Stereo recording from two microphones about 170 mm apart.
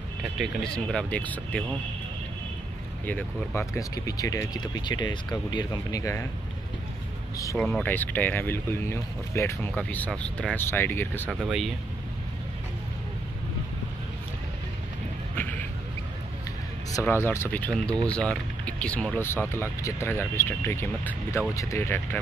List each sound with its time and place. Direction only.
0.2 s speech: centre (ahead or behind)
3.1 s speech: 10° left (ahead or behind)
7.5 s speech: 5° left (ahead or behind)
11.2 s speech: 5° right (ahead or behind)
17.0 s speech: 15° left (ahead or behind)